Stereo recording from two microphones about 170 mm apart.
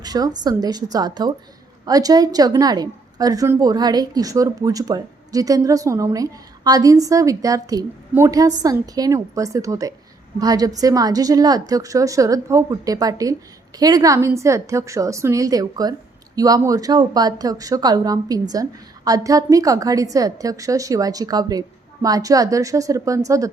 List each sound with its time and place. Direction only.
0.0 s a woman's voice: 25° right (ahead or behind)